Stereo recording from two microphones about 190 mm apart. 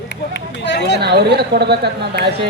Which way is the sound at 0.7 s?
60° left (ahead or behind).